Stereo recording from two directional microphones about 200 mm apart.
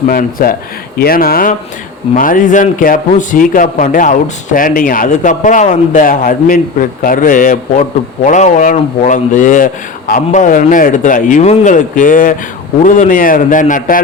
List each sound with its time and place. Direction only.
0.1 s speech: 45° left (ahead or behind)